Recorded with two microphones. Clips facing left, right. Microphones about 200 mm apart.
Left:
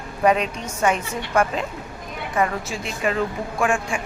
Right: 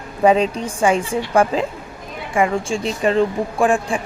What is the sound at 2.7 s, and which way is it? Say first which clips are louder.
A woman's voice: right 6 dB; 30° right (ahead or behind).